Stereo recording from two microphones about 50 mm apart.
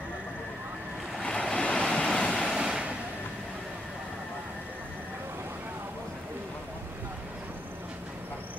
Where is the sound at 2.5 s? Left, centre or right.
Centre.